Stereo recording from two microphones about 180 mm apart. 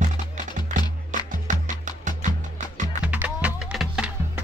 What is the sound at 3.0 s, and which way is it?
Music, 10° right (ahead or behind).